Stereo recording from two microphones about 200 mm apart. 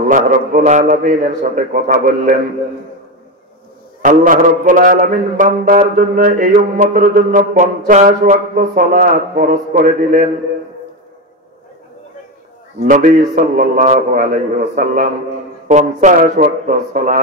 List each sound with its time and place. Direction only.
0.1 s mantra: 40° right (ahead or behind)
4.0 s mantra: 40° right (ahead or behind)
12.8 s mantra: 40° right (ahead or behind)